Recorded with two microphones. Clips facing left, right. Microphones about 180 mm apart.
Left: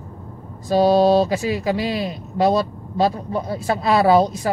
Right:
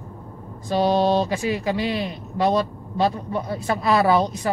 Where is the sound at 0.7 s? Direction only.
40° left (ahead or behind).